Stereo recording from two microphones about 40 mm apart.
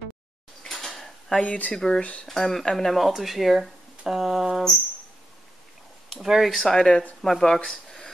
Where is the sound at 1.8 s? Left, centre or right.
Left.